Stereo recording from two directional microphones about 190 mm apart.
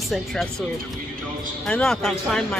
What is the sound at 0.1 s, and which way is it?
Speech, centre (ahead or behind).